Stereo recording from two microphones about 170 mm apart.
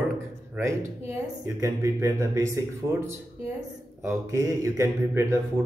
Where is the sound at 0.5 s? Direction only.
15° right (ahead or behind).